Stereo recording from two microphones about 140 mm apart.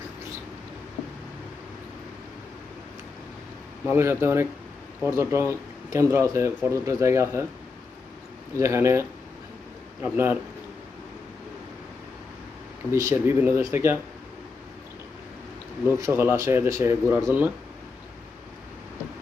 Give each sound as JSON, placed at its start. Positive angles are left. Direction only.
{"t": 3.8, "sound": "speech", "side_deg": -15}
{"t": 8.5, "sound": "speech", "side_deg": -20}
{"t": 12.9, "sound": "speech", "side_deg": -20}
{"t": 15.9, "sound": "speech", "side_deg": -20}